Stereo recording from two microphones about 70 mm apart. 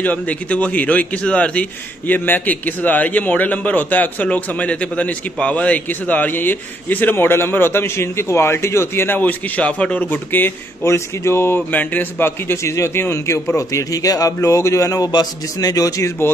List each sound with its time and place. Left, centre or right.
0.0 s a man's voice: left
9.6 s a man's voice: centre
10.1 s a man's voice: left
11.7 s a man's voice: left
13.6 s a man's voice: left